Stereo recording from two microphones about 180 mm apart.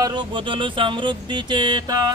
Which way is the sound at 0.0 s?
25° right (ahead or behind).